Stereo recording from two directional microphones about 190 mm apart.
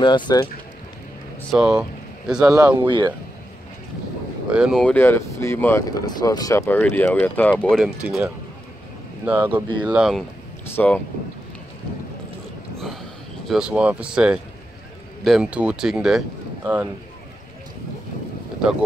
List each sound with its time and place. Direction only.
0.0 s speech: 25° left (ahead or behind)
1.5 s speech: 5° right (ahead or behind)
2.5 s speech: 25° right (ahead or behind)
4.5 s speech: 5° right (ahead or behind)
7.8 s speech: 5° right (ahead or behind)
10.8 s speech: 5° left (ahead or behind)
13.5 s speech: 5° right (ahead or behind)